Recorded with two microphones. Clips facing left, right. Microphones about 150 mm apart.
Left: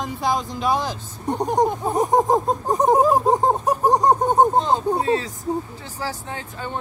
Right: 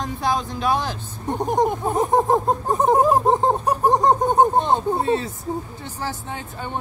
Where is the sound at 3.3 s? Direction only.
20° left (ahead or behind).